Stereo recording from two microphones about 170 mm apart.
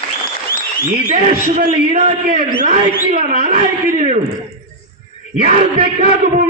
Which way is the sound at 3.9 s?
40° right (ahead or behind).